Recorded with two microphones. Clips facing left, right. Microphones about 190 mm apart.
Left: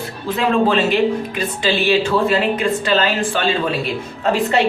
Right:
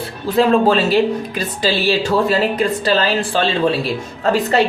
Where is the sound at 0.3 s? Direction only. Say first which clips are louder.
Right 3 dB; 35° right (ahead or behind).